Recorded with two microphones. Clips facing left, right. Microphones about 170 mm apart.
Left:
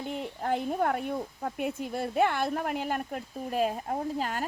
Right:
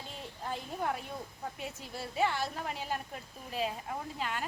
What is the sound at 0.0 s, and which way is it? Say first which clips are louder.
Speech: left 9 dB; 60° left (ahead or behind).